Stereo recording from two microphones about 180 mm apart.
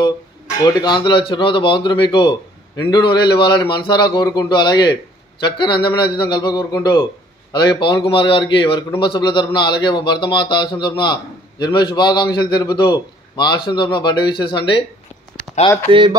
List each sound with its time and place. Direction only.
0.7 s a man's voice: 25° left (ahead or behind)
15.9 s speech: 25° right (ahead or behind)